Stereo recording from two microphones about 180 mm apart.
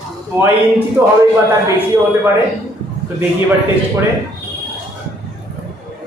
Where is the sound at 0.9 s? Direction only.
15° right (ahead or behind).